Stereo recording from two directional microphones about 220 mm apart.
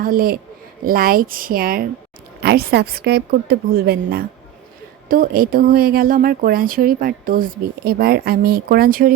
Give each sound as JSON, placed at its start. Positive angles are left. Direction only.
{"t": 0.0, "sound": "a woman's voice", "side_deg": -40}